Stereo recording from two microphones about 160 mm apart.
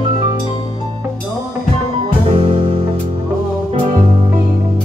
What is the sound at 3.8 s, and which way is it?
Music, 40° right (ahead or behind).